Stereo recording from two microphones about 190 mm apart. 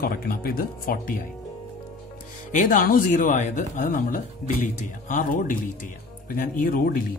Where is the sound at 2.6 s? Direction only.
45° left (ahead or behind).